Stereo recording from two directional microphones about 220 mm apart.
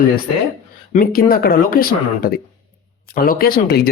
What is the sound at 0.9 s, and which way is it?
Speech, 40° left (ahead or behind).